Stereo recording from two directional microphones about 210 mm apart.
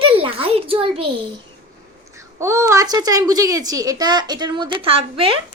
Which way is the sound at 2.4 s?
15° right (ahead or behind).